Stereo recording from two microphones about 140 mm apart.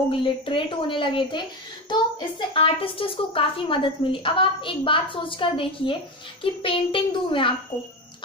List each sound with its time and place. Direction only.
0.1 s a woman's voice: 40° left (ahead or behind)